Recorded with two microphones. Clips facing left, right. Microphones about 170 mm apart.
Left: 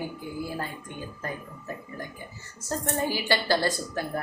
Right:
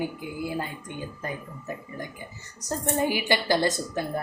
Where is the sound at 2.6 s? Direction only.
15° right (ahead or behind).